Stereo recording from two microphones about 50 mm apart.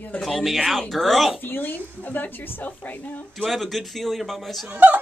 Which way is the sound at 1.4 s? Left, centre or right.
Left.